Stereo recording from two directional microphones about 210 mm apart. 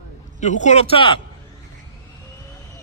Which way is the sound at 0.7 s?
30° left (ahead or behind).